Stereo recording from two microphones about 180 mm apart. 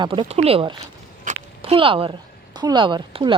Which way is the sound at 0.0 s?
30° right (ahead or behind).